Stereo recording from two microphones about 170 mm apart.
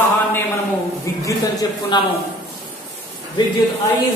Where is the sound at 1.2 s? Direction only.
20° left (ahead or behind).